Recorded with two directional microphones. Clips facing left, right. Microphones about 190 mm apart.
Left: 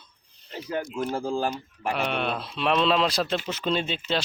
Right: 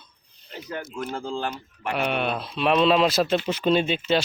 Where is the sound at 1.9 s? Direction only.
5° right (ahead or behind).